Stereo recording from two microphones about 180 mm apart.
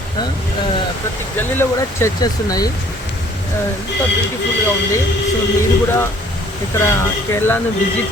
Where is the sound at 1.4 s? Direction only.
15° left (ahead or behind).